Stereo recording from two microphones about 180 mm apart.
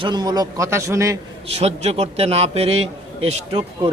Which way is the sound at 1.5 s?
35° right (ahead or behind).